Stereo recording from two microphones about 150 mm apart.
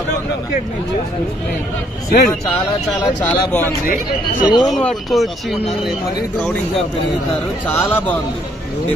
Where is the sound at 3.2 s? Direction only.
10° left (ahead or behind).